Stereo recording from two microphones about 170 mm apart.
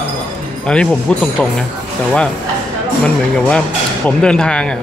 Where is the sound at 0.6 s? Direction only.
5° left (ahead or behind).